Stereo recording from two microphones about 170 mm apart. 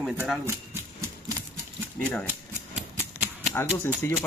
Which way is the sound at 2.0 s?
5° left (ahead or behind).